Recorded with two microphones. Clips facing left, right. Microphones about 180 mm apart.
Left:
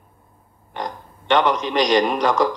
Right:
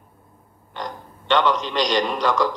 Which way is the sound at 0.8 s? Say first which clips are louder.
Left 2 dB; 15° left (ahead or behind).